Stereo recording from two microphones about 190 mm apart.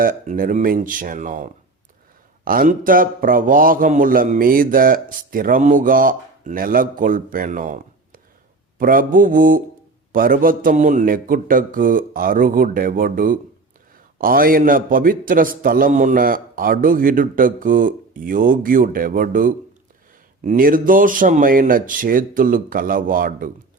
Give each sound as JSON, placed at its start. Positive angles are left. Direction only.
{"t": 0.0, "sound": "a man's voice", "side_deg": -45}